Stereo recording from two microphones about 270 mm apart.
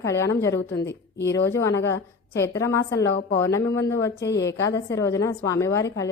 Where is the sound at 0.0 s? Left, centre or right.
Centre.